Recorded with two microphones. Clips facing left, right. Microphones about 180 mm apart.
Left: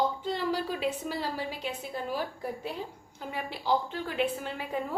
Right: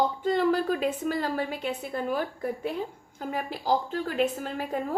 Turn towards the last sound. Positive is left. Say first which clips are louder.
# right 3 dB
turn(degrees=-45)  # may be behind; listen again after turning